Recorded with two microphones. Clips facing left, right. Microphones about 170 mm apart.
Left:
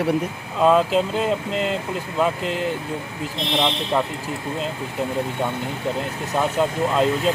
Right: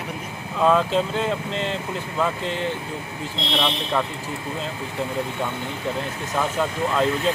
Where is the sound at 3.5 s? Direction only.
20° left (ahead or behind).